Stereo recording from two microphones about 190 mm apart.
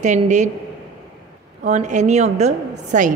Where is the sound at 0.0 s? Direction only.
40° right (ahead or behind).